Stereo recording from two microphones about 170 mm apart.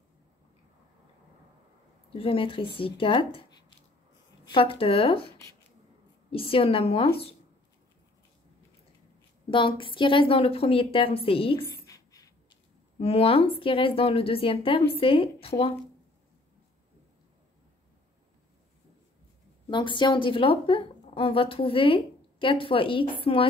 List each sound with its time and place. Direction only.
2.1 s a woman's voice: 30° left (ahead or behind)
4.5 s a woman's voice: 30° left (ahead or behind)
6.3 s a woman's voice: 35° left (ahead or behind)
9.5 s a woman's voice: 30° left (ahead or behind)
11.6 s a sound: 20° left (ahead or behind)
13.0 s a woman's voice: 35° left (ahead or behind)
19.7 s a woman's voice: 30° left (ahead or behind)